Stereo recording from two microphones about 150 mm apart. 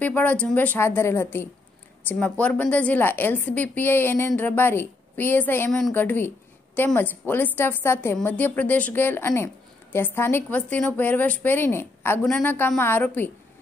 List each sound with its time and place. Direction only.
0.0 s a woman's voice: 10° left (ahead or behind)